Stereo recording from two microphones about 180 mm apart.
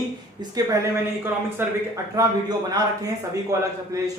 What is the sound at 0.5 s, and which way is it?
A man's voice, 15° right (ahead or behind).